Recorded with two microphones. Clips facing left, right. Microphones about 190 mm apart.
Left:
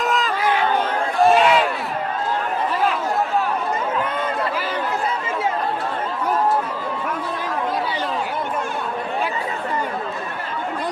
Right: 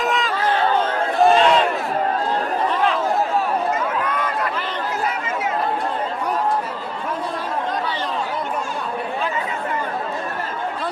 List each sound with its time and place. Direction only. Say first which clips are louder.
0.0 s chatter: even; centre (ahead or behind)
1.2 s battle cry: even; 5° left (ahead or behind)
4.0 s a sound: even; 25° left (ahead or behind)